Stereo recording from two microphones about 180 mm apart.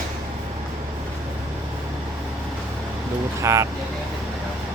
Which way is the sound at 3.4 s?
15° right (ahead or behind).